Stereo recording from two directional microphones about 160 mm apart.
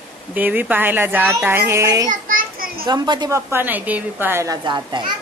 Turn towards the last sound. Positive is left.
turn(degrees=-30)  # may be behind; listen again after turning